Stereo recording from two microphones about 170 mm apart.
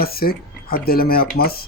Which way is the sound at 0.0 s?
65° left (ahead or behind).